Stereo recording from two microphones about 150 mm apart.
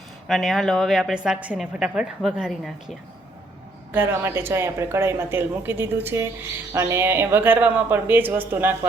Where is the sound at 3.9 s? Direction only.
15° right (ahead or behind).